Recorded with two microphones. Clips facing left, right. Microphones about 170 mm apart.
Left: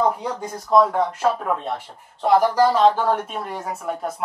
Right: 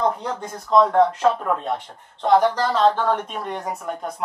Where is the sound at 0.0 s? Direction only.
5° left (ahead or behind).